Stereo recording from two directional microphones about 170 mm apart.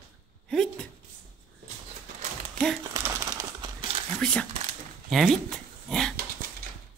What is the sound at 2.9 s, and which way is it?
Crumpling, 20° right (ahead or behind).